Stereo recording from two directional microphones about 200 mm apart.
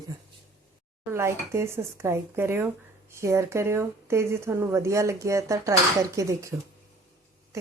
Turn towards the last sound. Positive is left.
turn(degrees=-15)  # may be behind; listen again after turning